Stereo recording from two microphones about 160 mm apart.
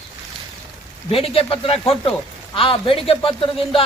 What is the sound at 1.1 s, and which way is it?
A man's voice, 35° left (ahead or behind).